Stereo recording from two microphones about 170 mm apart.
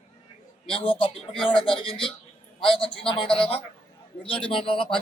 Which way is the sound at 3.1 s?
30° left (ahead or behind).